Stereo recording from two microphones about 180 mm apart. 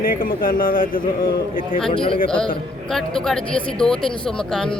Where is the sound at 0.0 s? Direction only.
50° left (ahead or behind).